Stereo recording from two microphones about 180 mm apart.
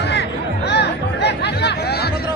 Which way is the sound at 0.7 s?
65° left (ahead or behind).